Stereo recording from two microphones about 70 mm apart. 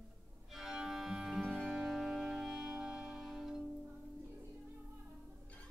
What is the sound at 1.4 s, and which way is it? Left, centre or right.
Music, centre.